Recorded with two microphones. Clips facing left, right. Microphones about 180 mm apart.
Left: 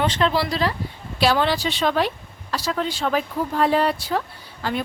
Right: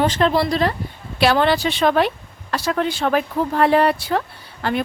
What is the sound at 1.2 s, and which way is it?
Speech, 60° right (ahead or behind).